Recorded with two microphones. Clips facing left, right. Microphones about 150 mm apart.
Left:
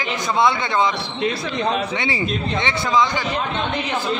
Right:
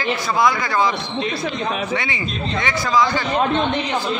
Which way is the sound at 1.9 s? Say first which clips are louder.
Left 1 dB; 25° left (ahead or behind).